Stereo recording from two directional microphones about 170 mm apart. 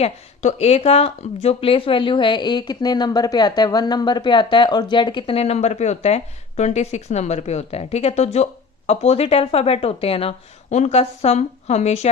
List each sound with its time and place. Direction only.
0.0 s speech: 40° left (ahead or behind)